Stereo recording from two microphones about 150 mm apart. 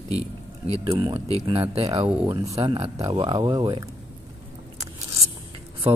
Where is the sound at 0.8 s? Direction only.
25° right (ahead or behind).